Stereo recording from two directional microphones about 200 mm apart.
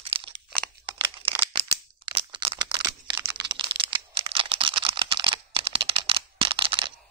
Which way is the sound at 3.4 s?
25° right (ahead or behind).